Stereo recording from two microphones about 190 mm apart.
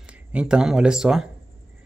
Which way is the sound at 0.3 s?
5° right (ahead or behind).